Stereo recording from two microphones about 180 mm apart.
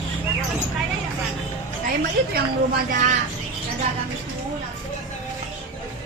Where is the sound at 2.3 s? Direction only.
60° right (ahead or behind).